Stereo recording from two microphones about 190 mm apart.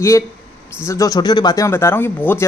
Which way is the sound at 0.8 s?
15° left (ahead or behind).